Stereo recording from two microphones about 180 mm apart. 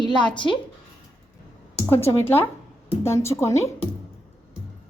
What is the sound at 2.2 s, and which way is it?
A woman's voice, 10° left (ahead or behind).